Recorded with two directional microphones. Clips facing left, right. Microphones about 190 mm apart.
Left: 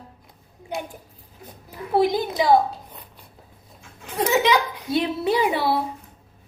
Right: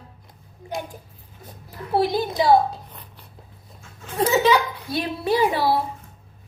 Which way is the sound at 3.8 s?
15° left (ahead or behind).